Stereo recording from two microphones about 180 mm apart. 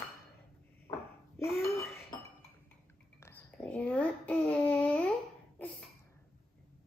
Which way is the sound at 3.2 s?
15° left (ahead or behind).